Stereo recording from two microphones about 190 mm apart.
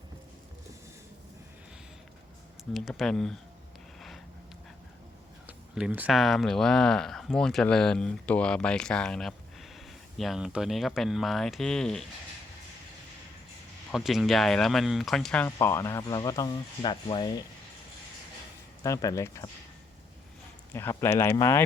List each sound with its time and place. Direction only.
2.7 s speech: centre (ahead or behind)
5.5 s speech: 5° right (ahead or behind)
13.9 s speech: centre (ahead or behind); by 17.2 s 25° left (ahead or behind)
18.8 s speech: 15° left (ahead or behind)
20.7 s speech: 15° left (ahead or behind)